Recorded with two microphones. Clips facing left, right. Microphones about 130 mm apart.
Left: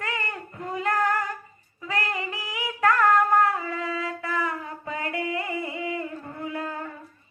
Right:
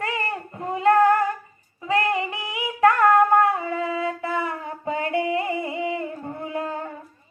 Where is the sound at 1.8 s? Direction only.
25° right (ahead or behind).